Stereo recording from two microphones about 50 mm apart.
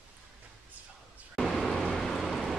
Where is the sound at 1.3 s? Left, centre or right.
Centre.